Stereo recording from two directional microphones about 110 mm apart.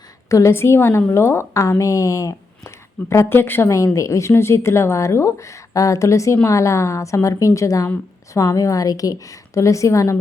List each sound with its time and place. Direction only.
0.3 s a woman's voice: 30° left (ahead or behind)